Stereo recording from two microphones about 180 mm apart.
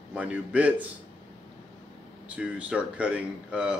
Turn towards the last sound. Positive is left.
turn(degrees=-5)  # may be behind; listen again after turning